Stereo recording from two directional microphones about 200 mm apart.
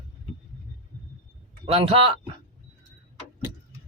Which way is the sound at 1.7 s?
30° right (ahead or behind).